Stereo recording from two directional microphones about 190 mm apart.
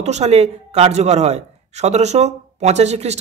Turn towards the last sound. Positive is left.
turn(degrees=-35)  # may be behind; listen again after turning